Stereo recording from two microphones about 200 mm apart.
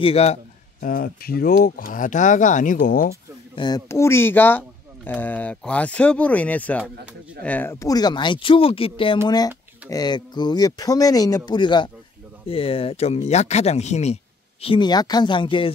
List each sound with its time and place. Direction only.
0.0 s speech: 30° left (ahead or behind)
3.5 s speech: 20° left (ahead or behind)
14.6 s speech: 25° left (ahead or behind)